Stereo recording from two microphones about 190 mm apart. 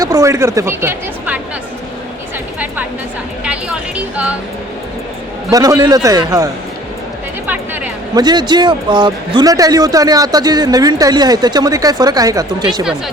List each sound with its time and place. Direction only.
0.0 s a woman's voice: 15° right (ahead or behind)
3.4 s a sound: 5° right (ahead or behind)
5.5 s a man's voice: 20° right (ahead or behind)
8.1 s a man's voice: 20° right (ahead or behind)